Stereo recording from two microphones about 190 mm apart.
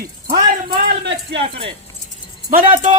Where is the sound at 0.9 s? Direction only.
65° right (ahead or behind).